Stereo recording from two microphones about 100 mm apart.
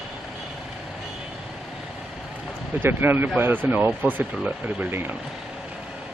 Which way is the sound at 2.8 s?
20° right (ahead or behind).